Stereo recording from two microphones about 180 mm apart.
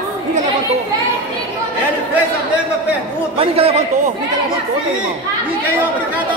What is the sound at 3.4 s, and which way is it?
Speech, 35° right (ahead or behind).